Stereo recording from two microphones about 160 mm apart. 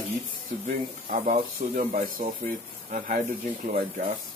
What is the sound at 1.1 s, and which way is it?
Speech, 50° right (ahead or behind).